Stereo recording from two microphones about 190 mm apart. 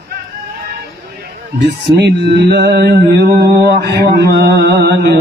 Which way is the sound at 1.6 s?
60° right (ahead or behind).